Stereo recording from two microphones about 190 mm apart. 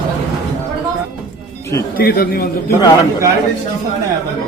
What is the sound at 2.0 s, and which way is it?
Speech, 50° left (ahead or behind).